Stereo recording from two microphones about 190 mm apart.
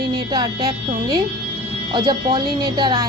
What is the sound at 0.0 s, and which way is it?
Music, 55° right (ahead or behind).